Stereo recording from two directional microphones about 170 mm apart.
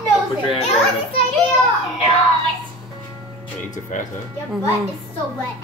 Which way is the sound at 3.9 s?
50° left (ahead or behind).